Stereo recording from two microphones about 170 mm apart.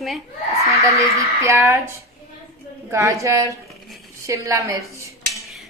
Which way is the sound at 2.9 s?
15° right (ahead or behind).